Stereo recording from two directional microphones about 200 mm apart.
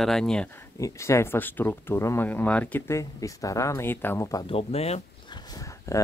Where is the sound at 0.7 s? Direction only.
15° left (ahead or behind); by 5.4 s 30° left (ahead or behind).